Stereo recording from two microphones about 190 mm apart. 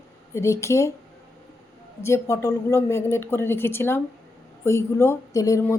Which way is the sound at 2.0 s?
15° left (ahead or behind).